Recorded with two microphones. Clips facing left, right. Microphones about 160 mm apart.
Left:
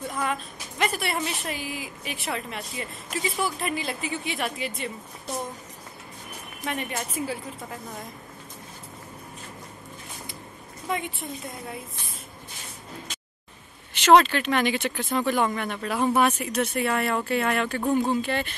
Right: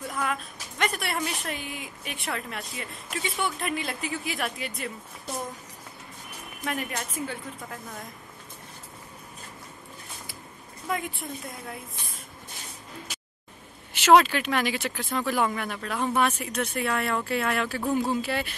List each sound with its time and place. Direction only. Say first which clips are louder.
0.0 s a woman's voice: left 1 dB; centre (ahead or behind)
6.6 s a woman's voice: left 1 dB; centre (ahead or behind)
10.9 s a woman's voice: left 1 dB; centre (ahead or behind)
13.9 s a woman's voice: left 1 dB; 5° right (ahead or behind)